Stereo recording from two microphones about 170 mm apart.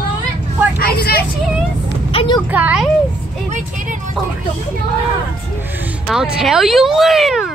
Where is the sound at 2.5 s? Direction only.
5° right (ahead or behind).